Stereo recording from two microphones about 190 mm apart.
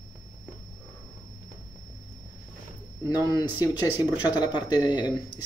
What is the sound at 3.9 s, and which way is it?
Speech, 10° right (ahead or behind).